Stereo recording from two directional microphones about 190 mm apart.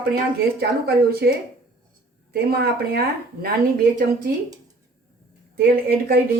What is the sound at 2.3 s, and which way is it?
Speech, 55° right (ahead or behind).